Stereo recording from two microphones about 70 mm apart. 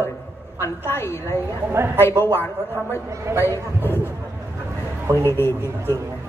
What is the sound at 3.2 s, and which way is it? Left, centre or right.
Speech, right.